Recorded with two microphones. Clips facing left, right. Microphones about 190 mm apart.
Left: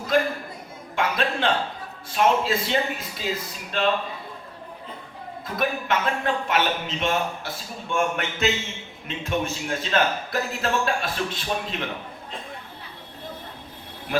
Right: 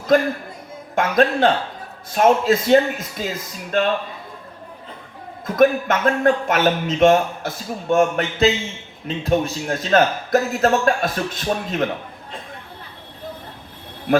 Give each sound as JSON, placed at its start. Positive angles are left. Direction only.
{"t": 0.1, "sound": "speech", "side_deg": -45}
{"t": 5.5, "sound": "speech", "side_deg": -45}